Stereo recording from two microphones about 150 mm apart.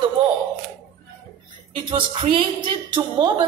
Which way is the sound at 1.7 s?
35° right (ahead or behind).